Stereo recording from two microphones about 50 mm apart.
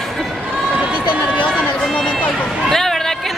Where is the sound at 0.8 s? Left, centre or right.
Right.